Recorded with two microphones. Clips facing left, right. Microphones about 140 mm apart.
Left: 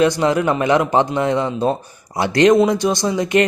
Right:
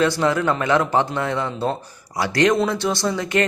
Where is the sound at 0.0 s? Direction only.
20° left (ahead or behind).